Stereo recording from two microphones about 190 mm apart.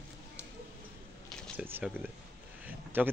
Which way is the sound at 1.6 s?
10° right (ahead or behind).